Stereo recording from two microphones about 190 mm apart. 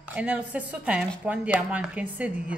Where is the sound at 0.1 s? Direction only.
5° right (ahead or behind).